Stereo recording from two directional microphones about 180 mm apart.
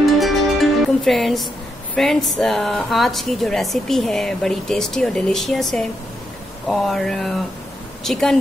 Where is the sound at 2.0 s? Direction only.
Centre (ahead or behind).